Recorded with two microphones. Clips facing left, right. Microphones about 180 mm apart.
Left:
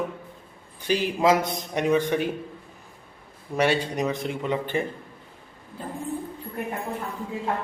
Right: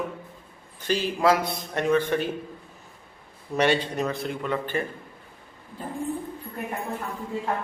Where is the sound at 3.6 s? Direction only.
10° left (ahead or behind).